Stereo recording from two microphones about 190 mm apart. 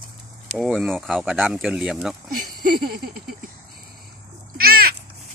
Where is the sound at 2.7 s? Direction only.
55° right (ahead or behind).